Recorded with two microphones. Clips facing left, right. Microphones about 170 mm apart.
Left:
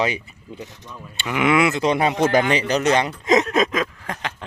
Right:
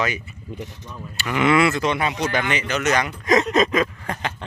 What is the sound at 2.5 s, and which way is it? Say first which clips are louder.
Speech: left 3 dB; 35° left (ahead or behind).